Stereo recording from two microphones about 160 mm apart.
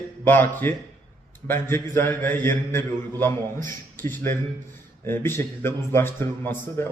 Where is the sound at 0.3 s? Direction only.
15° left (ahead or behind).